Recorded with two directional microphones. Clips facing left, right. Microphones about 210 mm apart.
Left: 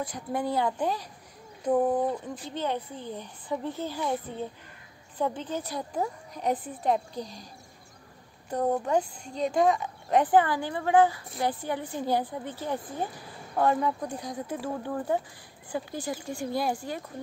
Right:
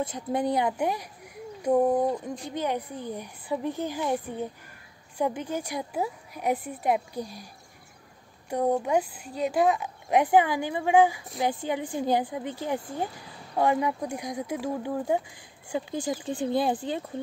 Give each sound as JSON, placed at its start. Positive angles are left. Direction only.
{"t": 0.0, "sound": "speech", "side_deg": -20}
{"t": 8.5, "sound": "speech", "side_deg": -10}